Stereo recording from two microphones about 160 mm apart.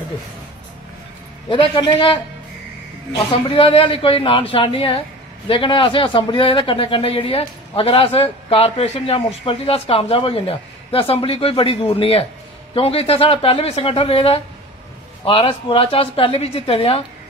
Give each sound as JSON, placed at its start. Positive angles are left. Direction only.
{"t": 1.5, "sound": "speech", "side_deg": 30}